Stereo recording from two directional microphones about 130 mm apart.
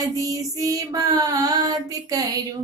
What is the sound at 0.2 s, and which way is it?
Speech, 25° right (ahead or behind).